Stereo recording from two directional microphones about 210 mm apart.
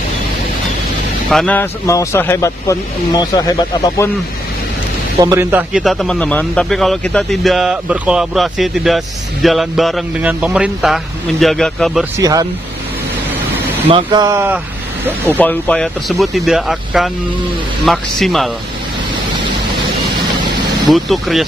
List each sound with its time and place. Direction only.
1.3 s speech: 5° left (ahead or behind)
5.2 s speech: 15° right (ahead or behind)
12.2 s speech: 15° right (ahead or behind)
13.8 s speech: 20° right (ahead or behind)
15.4 s speech: 5° left (ahead or behind)
20.9 s speech: centre (ahead or behind)